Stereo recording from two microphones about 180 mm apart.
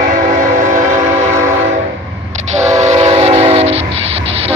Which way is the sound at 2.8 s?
35° right (ahead or behind).